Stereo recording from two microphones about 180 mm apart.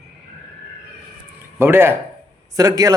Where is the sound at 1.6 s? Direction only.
15° right (ahead or behind).